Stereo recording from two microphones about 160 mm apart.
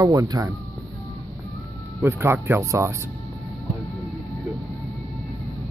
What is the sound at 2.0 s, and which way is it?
Speech, 15° right (ahead or behind).